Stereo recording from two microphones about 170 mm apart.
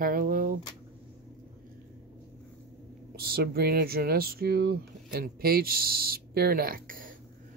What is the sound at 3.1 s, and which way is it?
Speech, 65° right (ahead or behind).